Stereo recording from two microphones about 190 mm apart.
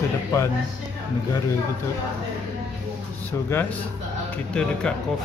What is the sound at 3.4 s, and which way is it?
Speech, 10° left (ahead or behind).